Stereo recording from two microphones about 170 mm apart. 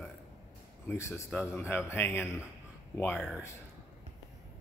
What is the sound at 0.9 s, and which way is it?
A man's voice, 15° left (ahead or behind).